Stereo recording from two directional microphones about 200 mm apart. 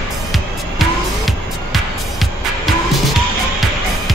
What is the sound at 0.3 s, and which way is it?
Music, centre (ahead or behind).